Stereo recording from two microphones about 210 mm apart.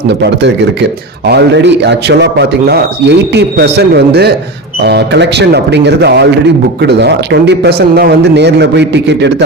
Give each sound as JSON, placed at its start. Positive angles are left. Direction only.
{"t": 0.2, "sound": "a man's voice", "side_deg": -55}